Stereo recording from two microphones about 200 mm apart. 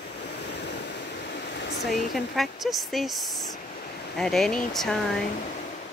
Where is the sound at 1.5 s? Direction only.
55° left (ahead or behind).